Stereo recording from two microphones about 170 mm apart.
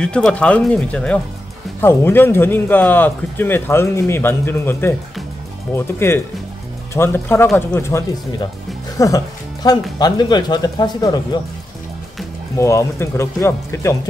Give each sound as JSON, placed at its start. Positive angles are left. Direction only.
{"t": 0.0, "sound": "speech", "side_deg": 5}
{"t": 5.9, "sound": "speech", "side_deg": 15}
{"t": 8.9, "sound": "music", "side_deg": 20}
{"t": 9.9, "sound": "speech", "side_deg": 25}
{"t": 12.5, "sound": "speech", "side_deg": 15}